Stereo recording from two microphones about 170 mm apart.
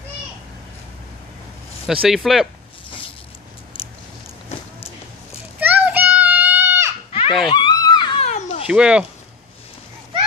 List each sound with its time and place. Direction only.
1.9 s speech: centre (ahead or behind)
5.6 s children playing: 10° right (ahead or behind)
7.1 s a sound: 35° left (ahead or behind)
8.3 s children playing: 40° left (ahead or behind)
8.6 s speech: 5° right (ahead or behind)